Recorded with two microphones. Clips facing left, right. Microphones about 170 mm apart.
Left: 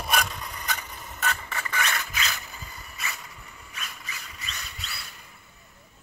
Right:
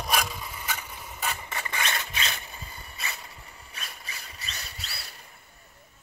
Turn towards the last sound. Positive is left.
turn(degrees=-35)  # may be behind; listen again after turning